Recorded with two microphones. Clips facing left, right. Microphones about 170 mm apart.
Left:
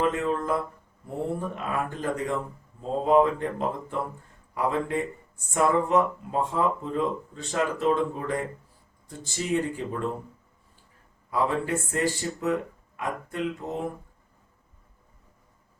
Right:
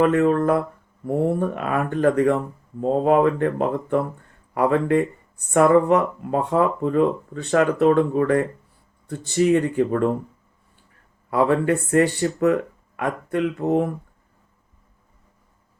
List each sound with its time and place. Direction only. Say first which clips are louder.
0.0 s speech: right 9 dB; 65° right (ahead or behind)
11.3 s speech: right 7 dB; 65° right (ahead or behind)